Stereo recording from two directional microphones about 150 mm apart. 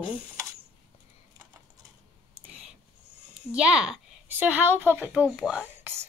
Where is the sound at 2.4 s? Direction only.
40° right (ahead or behind).